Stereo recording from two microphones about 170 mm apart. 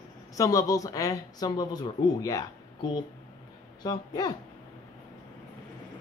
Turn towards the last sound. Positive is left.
turn(degrees=25)  # may be behind; listen again after turning